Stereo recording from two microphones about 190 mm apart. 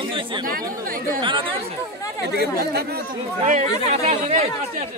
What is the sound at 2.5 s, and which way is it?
Speech, 55° right (ahead or behind).